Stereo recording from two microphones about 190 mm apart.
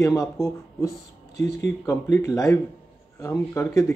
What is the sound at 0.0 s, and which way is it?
Speech, 15° left (ahead or behind).